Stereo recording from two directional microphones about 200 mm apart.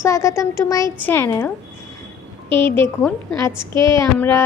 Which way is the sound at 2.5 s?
25° right (ahead or behind).